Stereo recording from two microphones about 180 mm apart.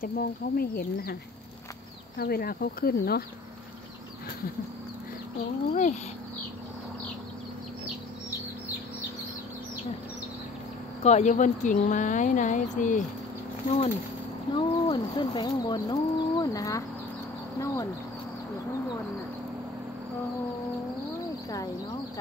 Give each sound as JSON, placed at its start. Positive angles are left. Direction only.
{"t": 0.0, "sound": "speech", "side_deg": 55}
{"t": 2.1, "sound": "speech", "side_deg": 60}
{"t": 5.7, "sound": "speech", "side_deg": 40}
{"t": 11.1, "sound": "speech", "side_deg": 40}
{"t": 14.5, "sound": "speech", "side_deg": 25}